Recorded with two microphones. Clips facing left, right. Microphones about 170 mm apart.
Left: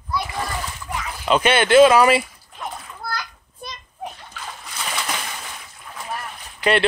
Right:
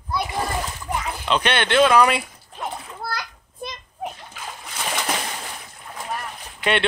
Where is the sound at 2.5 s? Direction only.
30° right (ahead or behind).